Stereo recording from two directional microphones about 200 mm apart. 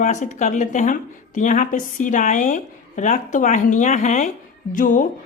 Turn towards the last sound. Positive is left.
turn(degrees=40)  # may be behind; listen again after turning